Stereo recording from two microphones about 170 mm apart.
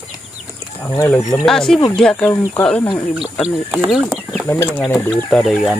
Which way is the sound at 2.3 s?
15° left (ahead or behind).